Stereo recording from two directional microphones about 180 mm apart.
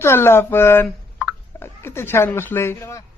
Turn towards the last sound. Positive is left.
turn(degrees=15)  # may be behind; listen again after turning